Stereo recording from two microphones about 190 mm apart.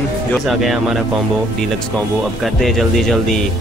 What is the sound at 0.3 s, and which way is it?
Speech, centre (ahead or behind).